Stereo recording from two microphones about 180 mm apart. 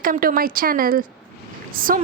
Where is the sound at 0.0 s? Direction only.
50° right (ahead or behind).